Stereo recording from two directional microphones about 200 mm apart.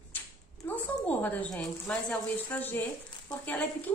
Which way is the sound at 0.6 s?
10° left (ahead or behind).